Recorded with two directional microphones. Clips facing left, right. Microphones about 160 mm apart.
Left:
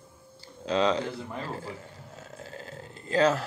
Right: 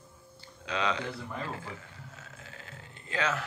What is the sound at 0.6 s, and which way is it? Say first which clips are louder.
Speech: left 7 dB; 35° left (ahead or behind).